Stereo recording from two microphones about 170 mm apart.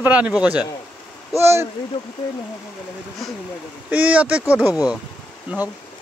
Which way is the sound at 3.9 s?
10° right (ahead or behind).